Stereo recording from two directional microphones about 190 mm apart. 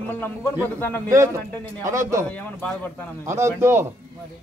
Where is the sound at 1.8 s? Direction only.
15° right (ahead or behind).